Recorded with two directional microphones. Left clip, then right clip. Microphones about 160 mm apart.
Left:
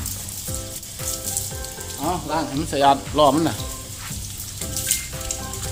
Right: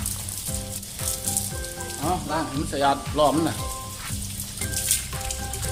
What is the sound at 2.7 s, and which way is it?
Speech, 40° left (ahead or behind).